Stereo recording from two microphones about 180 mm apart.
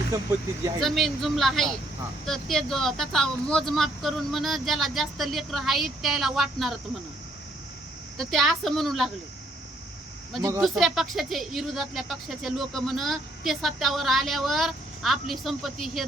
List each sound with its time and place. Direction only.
0.1 s speech: 15° right (ahead or behind)
0.8 s speech: centre (ahead or behind)
8.2 s speech: centre (ahead or behind)
10.6 s speech: centre (ahead or behind)